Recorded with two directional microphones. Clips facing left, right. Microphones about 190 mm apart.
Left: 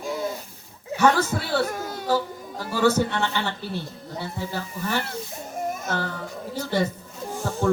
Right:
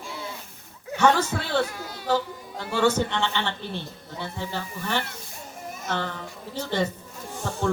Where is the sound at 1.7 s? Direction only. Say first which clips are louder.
Left 5 dB; 45° left (ahead or behind).